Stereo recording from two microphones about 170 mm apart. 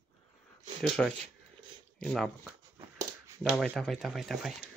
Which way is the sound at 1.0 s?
Centre (ahead or behind).